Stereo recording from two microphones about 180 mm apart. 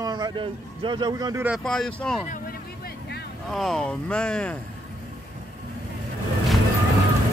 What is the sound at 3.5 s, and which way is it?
Speech, 5° left (ahead or behind).